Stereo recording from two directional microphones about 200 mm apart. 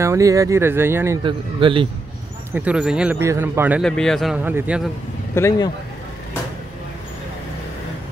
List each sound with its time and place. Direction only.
0.0 s speech: 15° right (ahead or behind)
1.2 s speech: 25° right (ahead or behind)
2.5 s speech: 5° right (ahead or behind)
3.8 s speech: 5° left (ahead or behind)
5.3 s speech: 15° left (ahead or behind)